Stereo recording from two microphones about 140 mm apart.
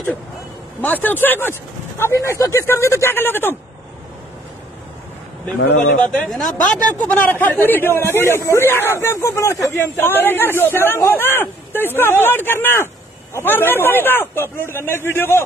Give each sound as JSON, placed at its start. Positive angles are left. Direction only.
{"t": 0.7, "sound": "speech", "side_deg": 15}
{"t": 6.2, "sound": "speech", "side_deg": 0}
{"t": 6.9, "sound": "speech", "side_deg": 10}